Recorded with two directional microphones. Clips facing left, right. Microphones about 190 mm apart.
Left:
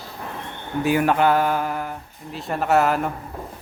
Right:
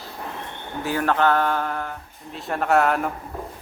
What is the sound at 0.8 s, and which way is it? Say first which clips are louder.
Speech: left 3 dB; 15° left (ahead or behind).